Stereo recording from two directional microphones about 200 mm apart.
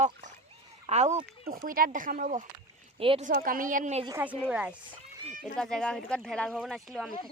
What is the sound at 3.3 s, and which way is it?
Speech, 45° right (ahead or behind).